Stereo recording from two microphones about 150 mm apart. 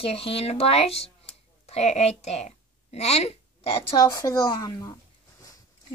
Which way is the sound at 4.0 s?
25° left (ahead or behind).